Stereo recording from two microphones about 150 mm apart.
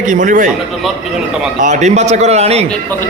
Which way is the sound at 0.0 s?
60° right (ahead or behind).